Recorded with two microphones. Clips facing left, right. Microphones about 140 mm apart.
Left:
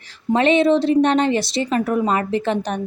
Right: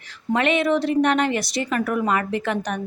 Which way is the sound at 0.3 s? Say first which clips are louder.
Left 5 dB; 30° left (ahead or behind).